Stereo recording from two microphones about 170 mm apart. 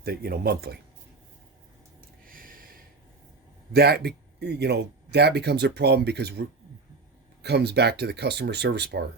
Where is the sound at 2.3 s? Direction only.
55° right (ahead or behind).